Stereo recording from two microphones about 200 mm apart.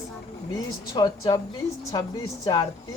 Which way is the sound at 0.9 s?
20° left (ahead or behind).